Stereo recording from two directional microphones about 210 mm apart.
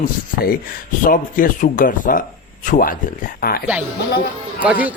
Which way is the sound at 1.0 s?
40° left (ahead or behind).